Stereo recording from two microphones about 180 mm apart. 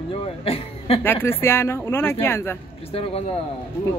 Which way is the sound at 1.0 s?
10° left (ahead or behind).